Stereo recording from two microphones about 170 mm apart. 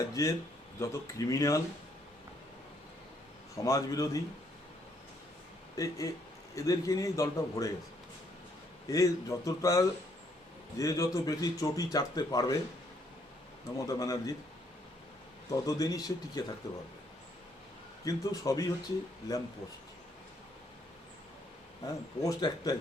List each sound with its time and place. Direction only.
0.0 s speech: 20° left (ahead or behind)
3.5 s speech: 20° left (ahead or behind)
5.7 s speech: 20° left (ahead or behind)
8.9 s speech: 20° left (ahead or behind)
13.7 s speech: 20° left (ahead or behind)
15.4 s speech: 20° left (ahead or behind)
18.0 s speech: 20° left (ahead or behind)
21.8 s speech: 20° left (ahead or behind)